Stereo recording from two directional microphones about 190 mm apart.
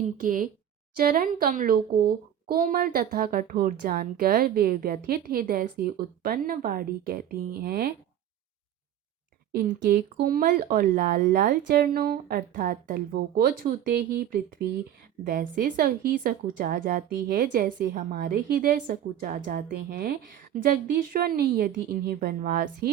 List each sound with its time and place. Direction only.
0.2 s a woman's voice: 45° right (ahead or behind)
9.6 s a woman's voice: 50° right (ahead or behind)